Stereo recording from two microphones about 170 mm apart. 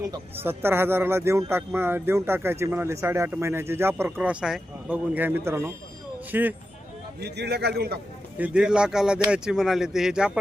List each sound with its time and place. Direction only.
0.0 s speech: 15° right (ahead or behind)
7.2 s a man's voice: 80° right
8.4 s speech: 5° right (ahead or behind)